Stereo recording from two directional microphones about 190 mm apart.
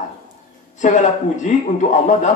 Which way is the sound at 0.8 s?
40° left (ahead or behind).